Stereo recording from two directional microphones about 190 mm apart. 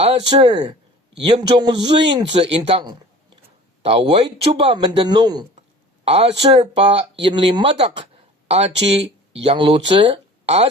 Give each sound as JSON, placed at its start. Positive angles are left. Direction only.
{"t": 0.0, "sound": "speech", "side_deg": -30}
{"t": 6.5, "sound": "speech", "side_deg": -30}
{"t": 10.0, "sound": "a sound", "side_deg": -30}